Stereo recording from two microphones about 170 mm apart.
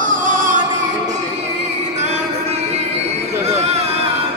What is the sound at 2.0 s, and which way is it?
Music, 40° right (ahead or behind).